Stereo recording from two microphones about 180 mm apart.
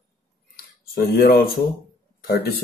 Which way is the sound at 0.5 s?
60° left (ahead or behind).